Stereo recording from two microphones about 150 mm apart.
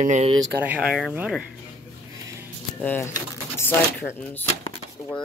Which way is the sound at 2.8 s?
10° left (ahead or behind).